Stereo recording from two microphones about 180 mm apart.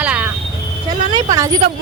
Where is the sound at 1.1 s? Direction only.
20° right (ahead or behind).